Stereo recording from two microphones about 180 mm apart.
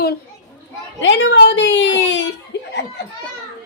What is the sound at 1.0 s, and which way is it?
A woman's voice, 90° left.